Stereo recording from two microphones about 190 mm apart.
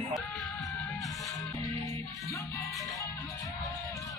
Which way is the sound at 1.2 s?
15° left (ahead or behind).